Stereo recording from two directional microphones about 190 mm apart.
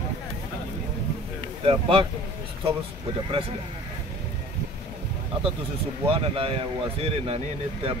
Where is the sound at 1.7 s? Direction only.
30° right (ahead or behind).